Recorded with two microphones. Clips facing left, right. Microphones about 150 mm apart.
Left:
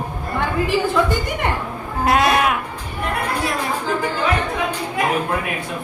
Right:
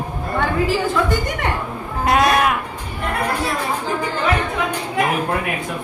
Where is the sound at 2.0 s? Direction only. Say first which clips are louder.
Even; centre (ahead or behind).